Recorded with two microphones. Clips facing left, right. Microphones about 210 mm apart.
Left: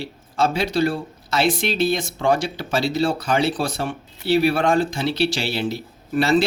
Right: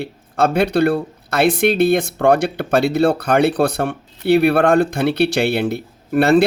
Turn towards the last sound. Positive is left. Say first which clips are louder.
# right 5 dB
turn(degrees=-60)  # may be behind; listen again after turning